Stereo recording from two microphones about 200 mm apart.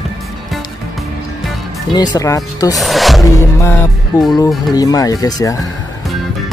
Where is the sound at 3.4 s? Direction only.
15° left (ahead or behind).